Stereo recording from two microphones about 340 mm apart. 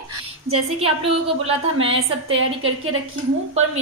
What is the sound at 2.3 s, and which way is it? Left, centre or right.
Speech, right.